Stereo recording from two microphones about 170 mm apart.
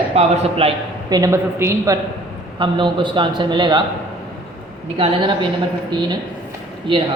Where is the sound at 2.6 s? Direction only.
30° right (ahead or behind).